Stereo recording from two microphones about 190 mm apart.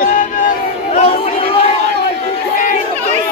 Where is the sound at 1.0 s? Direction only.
30° left (ahead or behind).